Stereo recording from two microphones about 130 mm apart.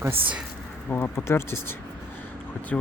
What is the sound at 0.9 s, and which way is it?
Speech, 20° left (ahead or behind).